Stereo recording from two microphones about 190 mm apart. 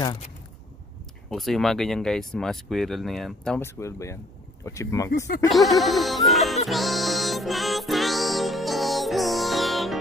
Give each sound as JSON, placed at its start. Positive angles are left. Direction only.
{"t": 1.3, "sound": "speech", "side_deg": 0}
{"t": 5.5, "sound": "music", "side_deg": 0}